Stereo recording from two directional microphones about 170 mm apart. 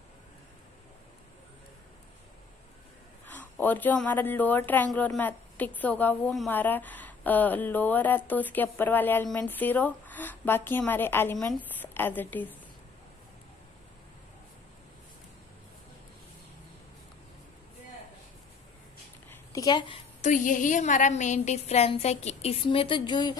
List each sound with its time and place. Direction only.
3.3 s a woman's voice: 10° left (ahead or behind)
19.3 s a sound: 20° left (ahead or behind)
20.2 s a woman's voice: 45° left (ahead or behind); by 23.3 s 25° left (ahead or behind)